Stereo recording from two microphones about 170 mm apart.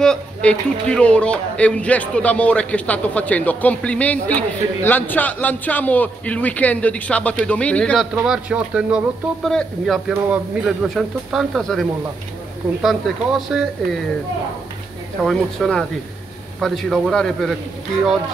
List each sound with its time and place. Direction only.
0.0 s speech: 5° left (ahead or behind)
8.1 s speech: 5° right (ahead or behind)
15.2 s speech: centre (ahead or behind)